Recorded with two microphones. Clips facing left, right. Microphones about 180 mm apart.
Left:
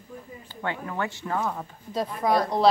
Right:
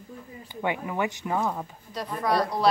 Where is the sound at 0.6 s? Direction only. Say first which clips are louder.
Right 2 dB; 15° right (ahead or behind).